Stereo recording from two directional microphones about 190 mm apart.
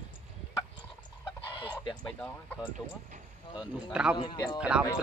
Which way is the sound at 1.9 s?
5° left (ahead or behind).